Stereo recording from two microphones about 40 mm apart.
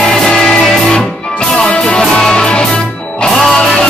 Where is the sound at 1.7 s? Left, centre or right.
Left.